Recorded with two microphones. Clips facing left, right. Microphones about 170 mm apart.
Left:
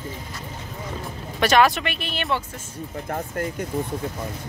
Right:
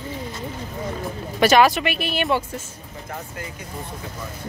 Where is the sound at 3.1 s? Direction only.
50° left (ahead or behind).